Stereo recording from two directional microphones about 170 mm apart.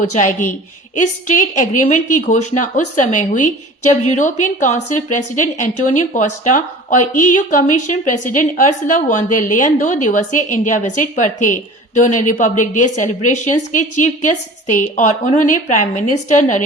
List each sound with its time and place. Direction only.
0.0 s a woman's voice: 45° left (ahead or behind)